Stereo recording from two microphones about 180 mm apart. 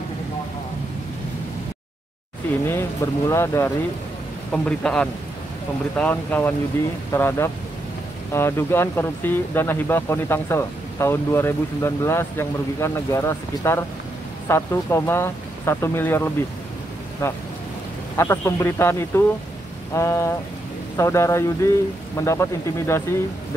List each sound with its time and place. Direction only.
2.6 s speech: 15° left (ahead or behind)
4.5 s a man's voice: 5° left (ahead or behind)